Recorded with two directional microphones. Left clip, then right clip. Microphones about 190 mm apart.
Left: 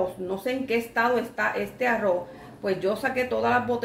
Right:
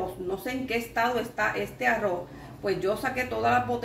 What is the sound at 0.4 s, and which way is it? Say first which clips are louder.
Speech: left 7 dB; 50° left (ahead or behind).